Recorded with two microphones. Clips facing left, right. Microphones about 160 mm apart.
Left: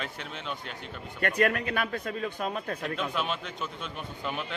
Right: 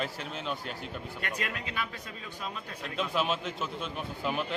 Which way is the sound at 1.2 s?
55° left (ahead or behind).